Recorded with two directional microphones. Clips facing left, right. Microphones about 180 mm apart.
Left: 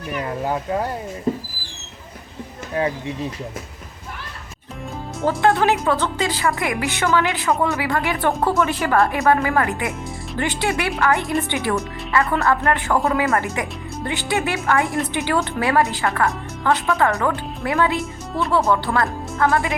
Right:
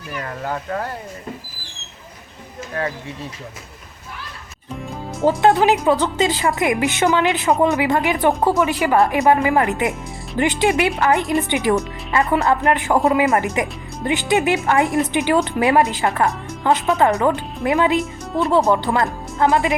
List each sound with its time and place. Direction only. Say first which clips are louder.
0.1 s speech: left 3 dB; 15° left (ahead or behind)
2.8 s speech: left 3 dB; 15° left (ahead or behind)
5.2 s a woman's voice: right 3 dB; 20° right (ahead or behind)
14.8 s a woman's voice: right 4 dB; centre (ahead or behind)
15.1 s speech: right 4 dB; 15° right (ahead or behind)
18.0 s a woman's voice: right 3 dB; centre (ahead or behind)
18.5 s a woman's voice: right 2 dB; 15° right (ahead or behind)